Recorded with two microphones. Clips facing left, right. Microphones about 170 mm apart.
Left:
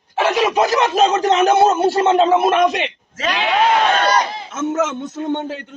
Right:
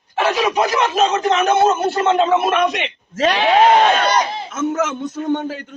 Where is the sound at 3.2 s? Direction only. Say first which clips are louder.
Right 4 dB; 40° right (ahead or behind).